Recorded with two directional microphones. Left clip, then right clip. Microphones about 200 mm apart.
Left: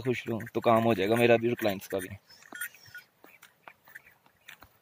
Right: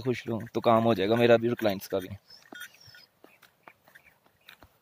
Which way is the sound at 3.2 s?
25° left (ahead or behind).